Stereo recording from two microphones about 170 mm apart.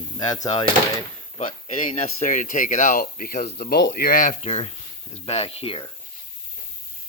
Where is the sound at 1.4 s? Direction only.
45° left (ahead or behind).